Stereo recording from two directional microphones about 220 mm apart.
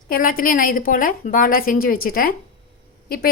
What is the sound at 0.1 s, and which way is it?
A woman's voice, 40° left (ahead or behind).